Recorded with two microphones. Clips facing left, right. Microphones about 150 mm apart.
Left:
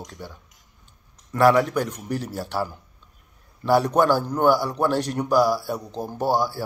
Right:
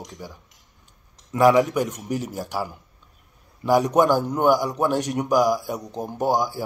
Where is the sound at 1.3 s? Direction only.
10° right (ahead or behind).